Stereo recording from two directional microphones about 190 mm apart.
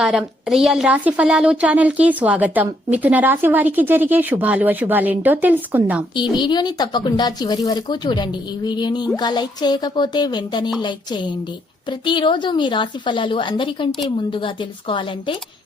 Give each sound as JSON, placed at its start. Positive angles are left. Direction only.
{"t": 0.0, "sound": "a woman's voice", "side_deg": 0}
{"t": 6.3, "sound": "speech", "side_deg": 25}
{"t": 11.9, "sound": "speech", "side_deg": 25}